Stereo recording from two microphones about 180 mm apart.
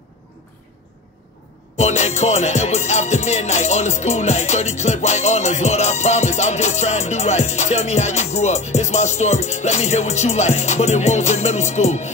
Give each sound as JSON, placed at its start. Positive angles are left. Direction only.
{"t": 1.8, "sound": "music", "side_deg": 40}